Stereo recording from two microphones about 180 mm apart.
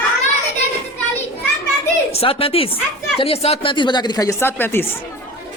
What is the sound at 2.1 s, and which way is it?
A woman's voice, 30° left (ahead or behind).